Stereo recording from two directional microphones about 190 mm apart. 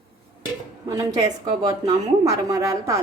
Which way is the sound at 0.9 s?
20° right (ahead or behind).